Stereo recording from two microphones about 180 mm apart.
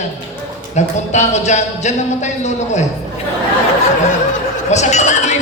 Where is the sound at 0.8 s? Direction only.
40° left (ahead or behind).